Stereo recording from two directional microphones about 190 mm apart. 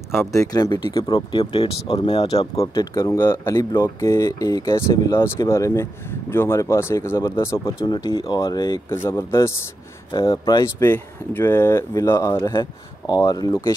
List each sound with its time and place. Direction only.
0.2 s speech: 15° left (ahead or behind)
2.5 s speech: 15° left (ahead or behind)
10.1 s speech: 25° left (ahead or behind)